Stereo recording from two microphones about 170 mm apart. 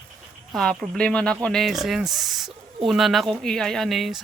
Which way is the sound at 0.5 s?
Centre (ahead or behind).